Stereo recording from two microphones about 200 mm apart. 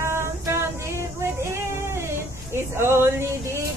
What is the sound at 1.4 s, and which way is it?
Child singing, 15° right (ahead or behind).